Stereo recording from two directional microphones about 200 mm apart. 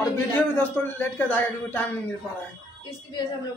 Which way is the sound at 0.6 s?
10° left (ahead or behind).